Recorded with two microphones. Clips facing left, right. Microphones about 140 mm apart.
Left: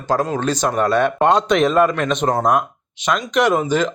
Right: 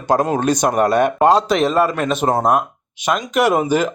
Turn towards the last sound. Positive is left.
turn(degrees=-10)  # may be behind; listen again after turning